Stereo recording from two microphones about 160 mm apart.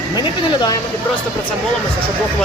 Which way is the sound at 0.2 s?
25° left (ahead or behind).